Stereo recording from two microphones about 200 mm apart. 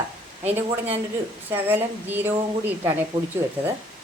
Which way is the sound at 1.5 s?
10° right (ahead or behind).